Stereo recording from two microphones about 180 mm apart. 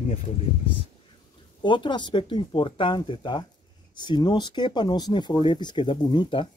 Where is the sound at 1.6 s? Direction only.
25° left (ahead or behind).